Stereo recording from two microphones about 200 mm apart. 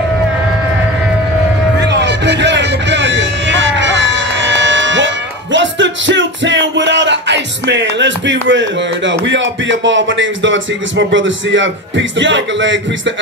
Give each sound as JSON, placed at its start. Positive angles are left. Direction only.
{"t": 1.8, "sound": "music", "side_deg": -60}